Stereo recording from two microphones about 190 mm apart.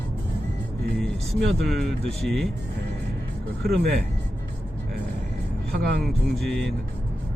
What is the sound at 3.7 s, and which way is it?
Speech, 60° right (ahead or behind).